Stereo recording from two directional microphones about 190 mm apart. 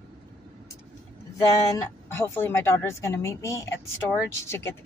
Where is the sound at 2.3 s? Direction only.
10° left (ahead or behind).